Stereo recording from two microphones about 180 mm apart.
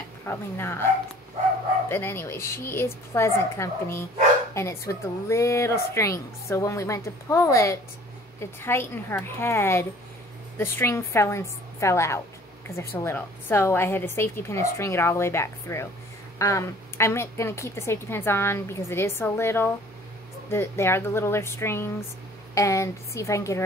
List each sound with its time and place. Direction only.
0.3 s a woman's voice: 15° left (ahead or behind)
1.9 s a woman's voice: 10° left (ahead or behind)